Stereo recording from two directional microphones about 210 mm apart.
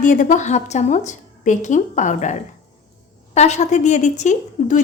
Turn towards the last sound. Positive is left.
turn(degrees=35)  # may be behind; listen again after turning